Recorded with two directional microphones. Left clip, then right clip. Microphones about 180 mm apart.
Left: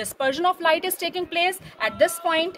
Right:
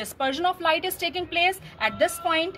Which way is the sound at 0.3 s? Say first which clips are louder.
Left 3 dB; 30° left (ahead or behind).